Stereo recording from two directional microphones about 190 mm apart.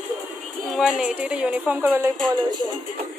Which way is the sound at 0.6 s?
Centre (ahead or behind).